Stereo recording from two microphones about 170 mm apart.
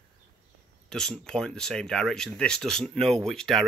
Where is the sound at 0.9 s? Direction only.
5° left (ahead or behind).